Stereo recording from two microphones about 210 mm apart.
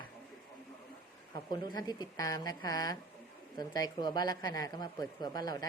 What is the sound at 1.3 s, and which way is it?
Speech, 20° left (ahead or behind).